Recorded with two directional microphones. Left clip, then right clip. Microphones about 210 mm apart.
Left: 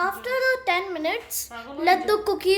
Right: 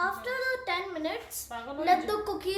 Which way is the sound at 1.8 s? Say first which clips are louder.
Left 6 dB; 35° left (ahead or behind).